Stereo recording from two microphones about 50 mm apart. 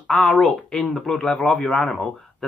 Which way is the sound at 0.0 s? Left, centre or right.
Centre.